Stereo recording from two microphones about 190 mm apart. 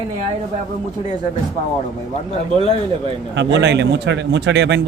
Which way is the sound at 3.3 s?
65° right (ahead or behind).